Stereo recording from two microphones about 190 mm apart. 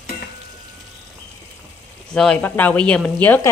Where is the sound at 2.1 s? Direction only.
5° left (ahead or behind).